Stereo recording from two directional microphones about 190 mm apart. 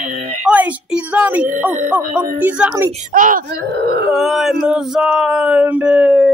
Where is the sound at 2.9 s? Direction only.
40° right (ahead or behind); by 4.1 s 55° right (ahead or behind).